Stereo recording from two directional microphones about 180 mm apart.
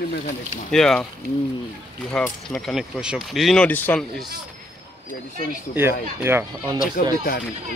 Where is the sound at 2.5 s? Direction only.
Centre (ahead or behind).